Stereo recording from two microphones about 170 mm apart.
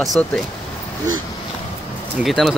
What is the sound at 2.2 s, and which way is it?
Speech, centre (ahead or behind).